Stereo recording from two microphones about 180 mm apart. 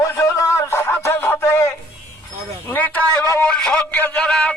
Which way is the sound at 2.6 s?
10° left (ahead or behind).